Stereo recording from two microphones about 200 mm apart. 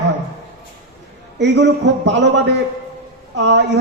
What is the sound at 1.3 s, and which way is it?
Speech, 60° right (ahead or behind).